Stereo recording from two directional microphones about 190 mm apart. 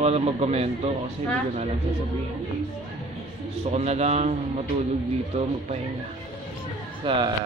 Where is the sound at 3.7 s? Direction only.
35° right (ahead or behind).